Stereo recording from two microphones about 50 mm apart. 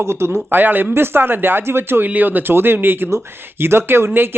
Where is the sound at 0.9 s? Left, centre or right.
Right.